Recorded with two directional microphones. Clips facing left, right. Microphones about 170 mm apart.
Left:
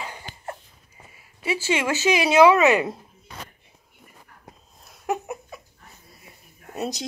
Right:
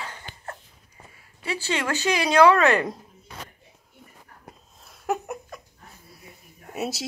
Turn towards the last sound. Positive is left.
turn(degrees=-5)  # may be behind; listen again after turning